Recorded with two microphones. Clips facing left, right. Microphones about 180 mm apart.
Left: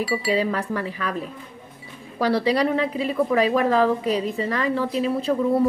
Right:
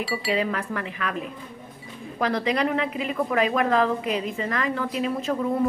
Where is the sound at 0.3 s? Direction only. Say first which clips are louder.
Left 2 dB; 35° left (ahead or behind).